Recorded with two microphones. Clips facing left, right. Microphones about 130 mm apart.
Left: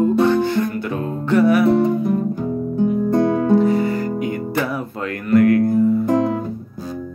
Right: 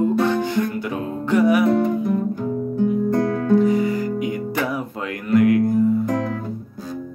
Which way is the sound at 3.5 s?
65° left (ahead or behind).